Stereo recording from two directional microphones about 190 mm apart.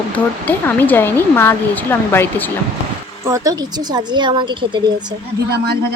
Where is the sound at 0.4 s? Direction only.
10° left (ahead or behind).